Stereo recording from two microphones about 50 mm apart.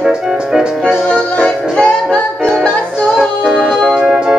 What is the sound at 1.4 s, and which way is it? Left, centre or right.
Music, left.